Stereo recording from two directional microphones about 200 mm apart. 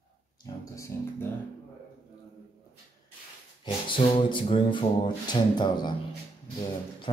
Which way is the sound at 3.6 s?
25° left (ahead or behind).